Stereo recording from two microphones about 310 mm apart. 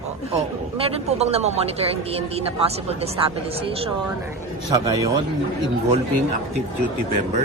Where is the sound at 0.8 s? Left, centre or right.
Right.